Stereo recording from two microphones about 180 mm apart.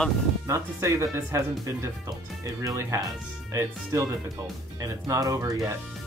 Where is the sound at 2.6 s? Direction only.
15° right (ahead or behind).